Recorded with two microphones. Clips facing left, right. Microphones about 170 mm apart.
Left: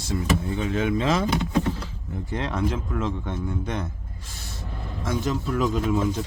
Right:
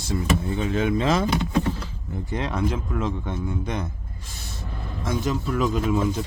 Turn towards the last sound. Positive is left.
turn(degrees=-5)  # may be behind; listen again after turning